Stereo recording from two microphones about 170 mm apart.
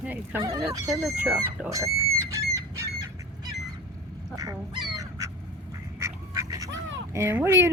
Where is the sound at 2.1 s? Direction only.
20° right (ahead or behind).